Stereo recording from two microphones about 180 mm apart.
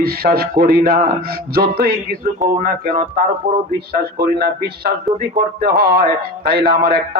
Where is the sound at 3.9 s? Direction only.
60° right (ahead or behind).